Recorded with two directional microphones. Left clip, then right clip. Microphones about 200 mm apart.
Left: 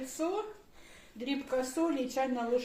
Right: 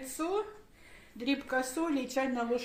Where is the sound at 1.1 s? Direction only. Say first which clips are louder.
Right 1 dB; 60° right (ahead or behind).